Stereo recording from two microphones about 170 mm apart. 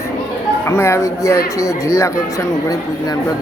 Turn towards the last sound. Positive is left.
turn(degrees=20)  # may be behind; listen again after turning